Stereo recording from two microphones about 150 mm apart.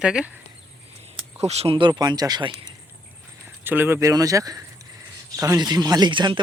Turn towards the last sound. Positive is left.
turn(degrees=-30)  # may be behind; listen again after turning